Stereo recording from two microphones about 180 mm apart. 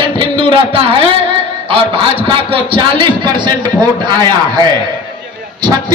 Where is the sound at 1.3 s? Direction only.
30° right (ahead or behind).